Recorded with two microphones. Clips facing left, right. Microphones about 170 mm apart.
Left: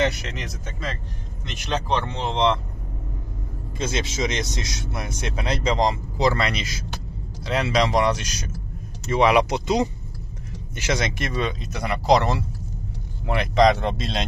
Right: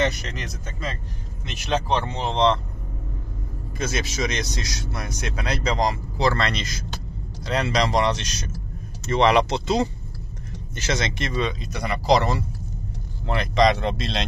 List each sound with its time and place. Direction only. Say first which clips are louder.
0.0 s speech: left 1 dB; 5° left (ahead or behind)
3.7 s speech: left 1 dB; 25° left (ahead or behind); by 14.1 s centre (ahead or behind)